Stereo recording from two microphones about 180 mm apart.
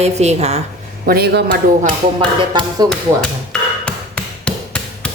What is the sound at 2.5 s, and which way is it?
Speech, 25° right (ahead or behind).